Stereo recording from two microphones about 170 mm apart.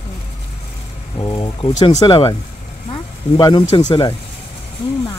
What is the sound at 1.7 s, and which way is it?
Speech, 45° left (ahead or behind).